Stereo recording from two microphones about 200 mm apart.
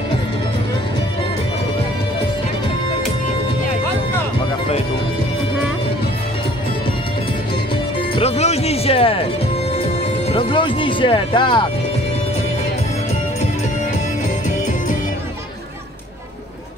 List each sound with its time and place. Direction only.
8.1 s music: 30° left (ahead or behind)
9.8 s speech: 25° left (ahead or behind)